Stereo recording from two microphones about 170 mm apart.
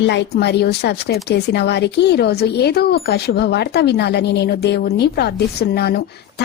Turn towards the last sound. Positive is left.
turn(degrees=70)  # may be behind; listen again after turning